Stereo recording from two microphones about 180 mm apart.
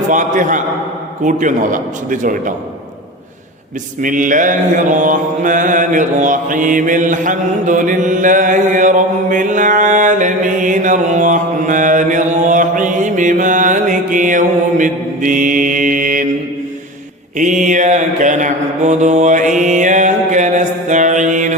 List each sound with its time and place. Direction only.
0.1 s a man's voice: 45° right (ahead or behind)
4.0 s mantra: 45° right (ahead or behind)
17.3 s mantra: 45° right (ahead or behind)